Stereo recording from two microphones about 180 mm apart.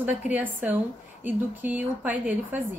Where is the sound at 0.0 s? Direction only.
10° right (ahead or behind).